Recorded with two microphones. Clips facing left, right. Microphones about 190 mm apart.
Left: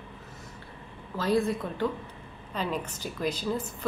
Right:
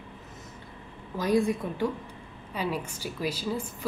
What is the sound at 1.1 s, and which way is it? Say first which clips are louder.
A woman's voice: right 1 dB; 15° right (ahead or behind).